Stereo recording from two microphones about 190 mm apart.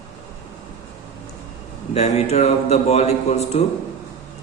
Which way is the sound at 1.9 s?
35° left (ahead or behind).